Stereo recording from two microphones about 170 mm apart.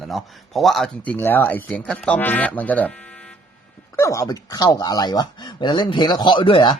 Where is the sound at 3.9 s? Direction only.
15° left (ahead or behind).